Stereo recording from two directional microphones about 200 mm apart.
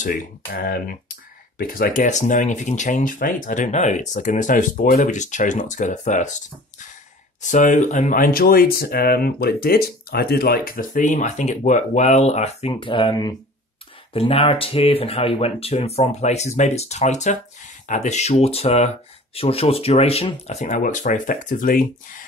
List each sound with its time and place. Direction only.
0.0 s speech: 45° left (ahead or behind)
7.4 s speech: 40° left (ahead or behind)